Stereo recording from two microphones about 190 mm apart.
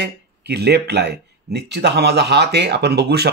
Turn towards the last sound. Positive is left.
turn(degrees=-60)  # may be behind; listen again after turning